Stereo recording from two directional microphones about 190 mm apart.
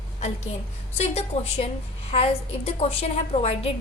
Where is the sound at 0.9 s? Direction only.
35° left (ahead or behind).